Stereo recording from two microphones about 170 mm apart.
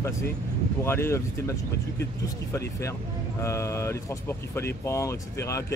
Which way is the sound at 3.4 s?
15° left (ahead or behind).